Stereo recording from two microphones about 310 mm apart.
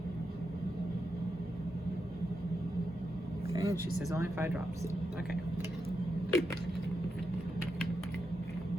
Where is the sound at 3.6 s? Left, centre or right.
Centre.